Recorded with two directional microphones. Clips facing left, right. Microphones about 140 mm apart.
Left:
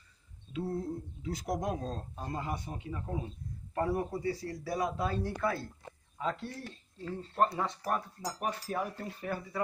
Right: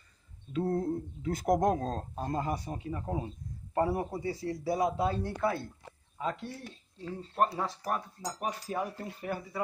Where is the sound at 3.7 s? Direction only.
25° right (ahead or behind).